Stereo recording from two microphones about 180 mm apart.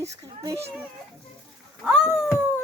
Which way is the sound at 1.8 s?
5° right (ahead or behind).